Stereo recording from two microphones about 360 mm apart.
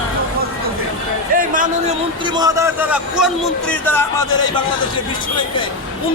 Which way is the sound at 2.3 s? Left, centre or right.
Centre.